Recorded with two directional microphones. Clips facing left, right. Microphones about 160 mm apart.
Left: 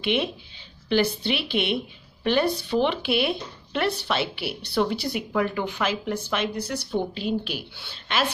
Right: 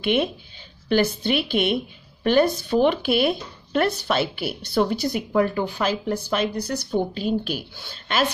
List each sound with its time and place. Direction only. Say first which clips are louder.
0.0 s speech: right 3 dB; 45° right (ahead or behind)